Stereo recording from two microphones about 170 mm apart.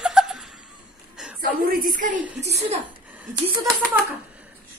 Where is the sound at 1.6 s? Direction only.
50° right (ahead or behind).